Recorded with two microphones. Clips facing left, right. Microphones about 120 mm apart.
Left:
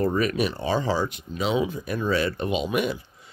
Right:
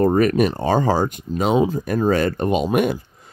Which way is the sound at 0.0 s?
45° right (ahead or behind).